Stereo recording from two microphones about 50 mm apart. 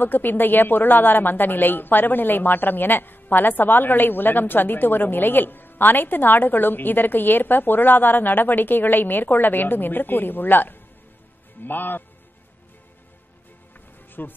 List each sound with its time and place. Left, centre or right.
0.0 s speech: left
14.2 s speech: left